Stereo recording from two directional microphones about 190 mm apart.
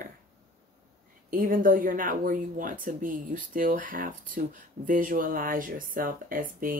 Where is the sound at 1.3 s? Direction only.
45° right (ahead or behind).